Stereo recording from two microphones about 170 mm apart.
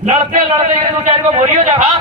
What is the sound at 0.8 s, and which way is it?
Speech, 35° right (ahead or behind).